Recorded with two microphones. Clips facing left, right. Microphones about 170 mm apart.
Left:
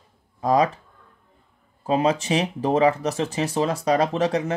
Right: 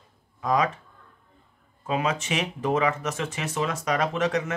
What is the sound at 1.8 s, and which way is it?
Speech, 35° left (ahead or behind).